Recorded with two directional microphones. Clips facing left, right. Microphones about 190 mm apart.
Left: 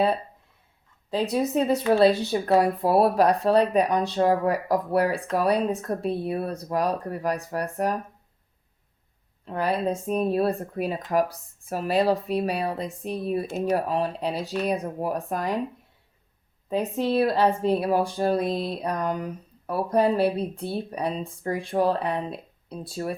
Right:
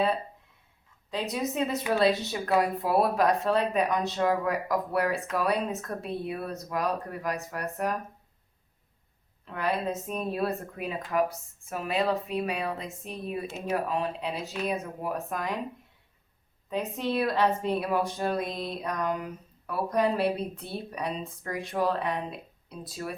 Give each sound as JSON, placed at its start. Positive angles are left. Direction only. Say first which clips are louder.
{"t": 1.1, "sound": "speech", "louder": "left 7 dB", "side_deg": 35}
{"t": 9.5, "sound": "speech", "louder": "left 4 dB", "side_deg": 35}
{"t": 16.6, "sound": "speech", "louder": "left 5 dB", "side_deg": 35}